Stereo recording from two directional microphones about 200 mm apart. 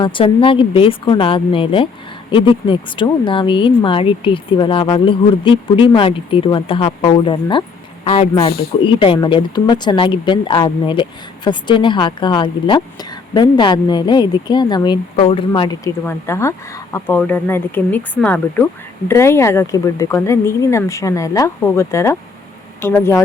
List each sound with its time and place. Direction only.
0.0 s speech: 25° left (ahead or behind)
16.0 s speech: 15° left (ahead or behind)